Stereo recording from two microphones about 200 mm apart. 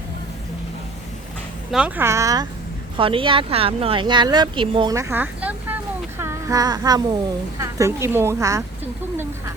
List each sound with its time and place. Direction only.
1.7 s a woman's voice: 10° right (ahead or behind)
6.1 s a sound: 15° right (ahead or behind)
7.6 s a woman's voice: 15° right (ahead or behind)